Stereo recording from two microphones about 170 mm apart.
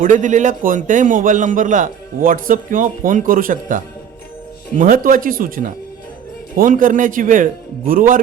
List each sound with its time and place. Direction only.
0.0 s a man's voice: 45° right (ahead or behind)